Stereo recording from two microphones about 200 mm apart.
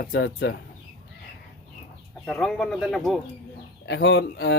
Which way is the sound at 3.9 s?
60° left (ahead or behind).